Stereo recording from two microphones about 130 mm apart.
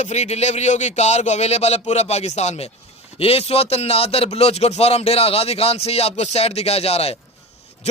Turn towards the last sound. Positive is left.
turn(degrees=50)  # may be behind; listen again after turning